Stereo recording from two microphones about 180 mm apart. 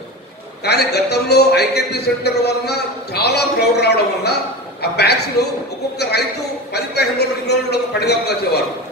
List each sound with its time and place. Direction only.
0.7 s a man's voice: 65° left (ahead or behind)
6.7 s a man's voice: 65° left (ahead or behind)